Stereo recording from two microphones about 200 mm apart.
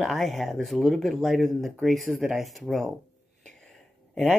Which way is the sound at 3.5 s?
Centre (ahead or behind).